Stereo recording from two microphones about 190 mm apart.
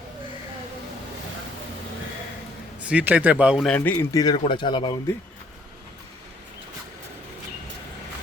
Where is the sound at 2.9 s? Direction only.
5° right (ahead or behind); by 5.0 s 25° left (ahead or behind).